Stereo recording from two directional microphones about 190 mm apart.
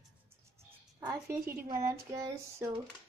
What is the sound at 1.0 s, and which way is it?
Speech, 15° right (ahead or behind).